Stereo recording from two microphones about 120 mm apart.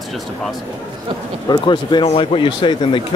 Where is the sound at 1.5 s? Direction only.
40° left (ahead or behind).